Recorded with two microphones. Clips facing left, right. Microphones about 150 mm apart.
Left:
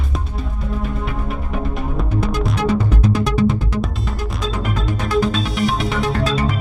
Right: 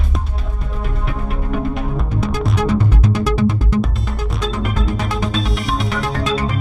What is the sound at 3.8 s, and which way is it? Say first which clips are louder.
Music: right 1 dB; centre (ahead or behind).